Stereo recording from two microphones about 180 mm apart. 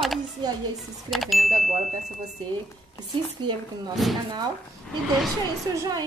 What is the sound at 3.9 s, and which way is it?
Speech, centre (ahead or behind).